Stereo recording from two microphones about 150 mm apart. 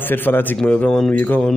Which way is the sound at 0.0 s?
15° left (ahead or behind).